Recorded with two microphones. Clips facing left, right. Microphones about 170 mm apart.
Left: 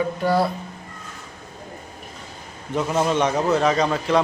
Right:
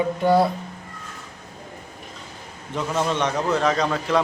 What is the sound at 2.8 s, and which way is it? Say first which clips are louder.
A man's voice: left 3 dB; 10° left (ahead or behind).